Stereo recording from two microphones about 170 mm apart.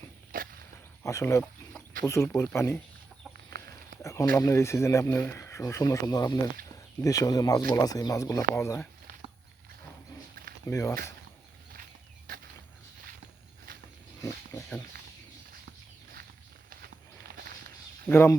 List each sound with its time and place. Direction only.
0.3 s a sound: 55° right (ahead or behind)
1.0 s speech: 15° left (ahead or behind)
3.3 s chicken: 65° right (ahead or behind)
4.0 s a sound: 20° left (ahead or behind)
4.4 s speech: 20° left (ahead or behind)
10.7 s speech: 15° left (ahead or behind)
12.3 s a sound: 60° right (ahead or behind)
14.2 s wild animals: 20° left (ahead or behind)
18.1 s speech: 15° left (ahead or behind)